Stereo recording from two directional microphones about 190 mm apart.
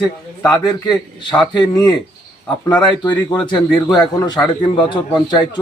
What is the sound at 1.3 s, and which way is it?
Speech, 20° left (ahead or behind).